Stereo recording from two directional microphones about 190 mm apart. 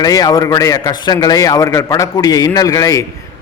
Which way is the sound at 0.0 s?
20° left (ahead or behind).